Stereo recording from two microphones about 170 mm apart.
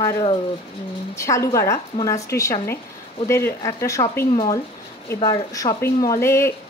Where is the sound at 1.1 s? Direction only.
15° left (ahead or behind).